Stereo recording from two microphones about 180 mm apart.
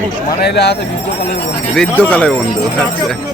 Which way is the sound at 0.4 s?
65° left (ahead or behind).